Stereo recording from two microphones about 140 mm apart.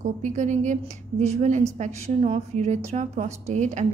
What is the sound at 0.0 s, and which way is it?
A woman's voice, 60° right (ahead or behind).